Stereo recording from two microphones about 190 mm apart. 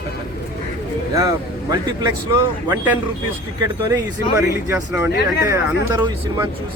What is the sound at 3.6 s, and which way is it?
Speech, 20° right (ahead or behind).